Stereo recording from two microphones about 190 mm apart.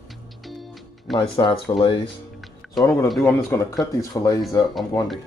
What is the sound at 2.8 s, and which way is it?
Speech, 15° left (ahead or behind).